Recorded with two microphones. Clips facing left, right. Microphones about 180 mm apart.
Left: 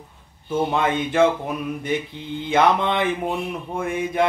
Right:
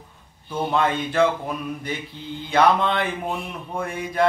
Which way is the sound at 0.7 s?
20° left (ahead or behind).